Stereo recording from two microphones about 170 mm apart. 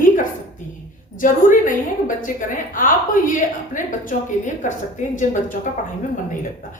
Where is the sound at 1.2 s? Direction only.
50° left (ahead or behind).